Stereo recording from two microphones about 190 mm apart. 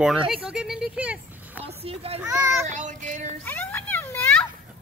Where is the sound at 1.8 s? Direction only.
30° right (ahead or behind).